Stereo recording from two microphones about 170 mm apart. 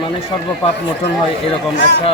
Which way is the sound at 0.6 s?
35° left (ahead or behind).